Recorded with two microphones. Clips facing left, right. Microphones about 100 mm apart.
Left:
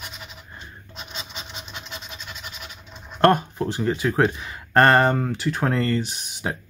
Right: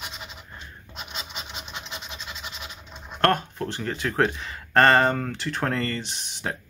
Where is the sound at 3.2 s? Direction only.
15° left (ahead or behind).